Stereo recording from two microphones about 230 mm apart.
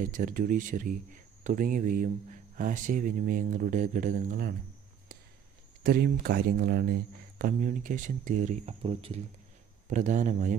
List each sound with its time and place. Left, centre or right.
0.0 s speech: right
5.9 s speech: right